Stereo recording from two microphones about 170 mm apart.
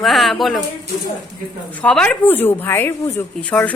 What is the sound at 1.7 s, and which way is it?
Speech, 5° left (ahead or behind).